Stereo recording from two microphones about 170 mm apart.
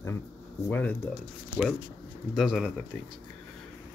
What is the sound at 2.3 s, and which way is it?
Speech, centre (ahead or behind).